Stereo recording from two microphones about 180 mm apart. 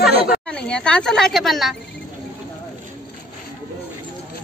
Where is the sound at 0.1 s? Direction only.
65° left (ahead or behind).